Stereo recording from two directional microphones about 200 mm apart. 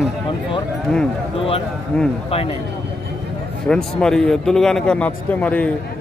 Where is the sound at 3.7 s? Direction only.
5° left (ahead or behind).